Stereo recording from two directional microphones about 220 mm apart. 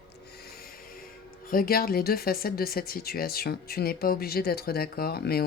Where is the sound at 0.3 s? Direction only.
45° left (ahead or behind).